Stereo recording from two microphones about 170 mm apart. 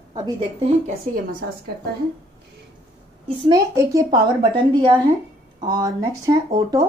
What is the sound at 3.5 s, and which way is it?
A woman's voice, 20° right (ahead or behind).